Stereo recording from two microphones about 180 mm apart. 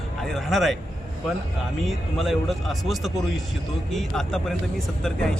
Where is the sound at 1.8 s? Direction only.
Centre (ahead or behind).